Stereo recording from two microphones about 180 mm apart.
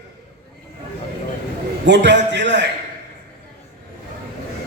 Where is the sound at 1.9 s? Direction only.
75° right (ahead or behind).